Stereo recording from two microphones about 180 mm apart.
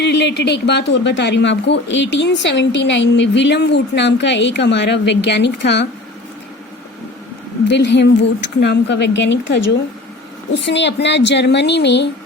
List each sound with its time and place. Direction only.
0.0 s speech: 75° left (ahead or behind)
7.7 s speech: 70° left (ahead or behind)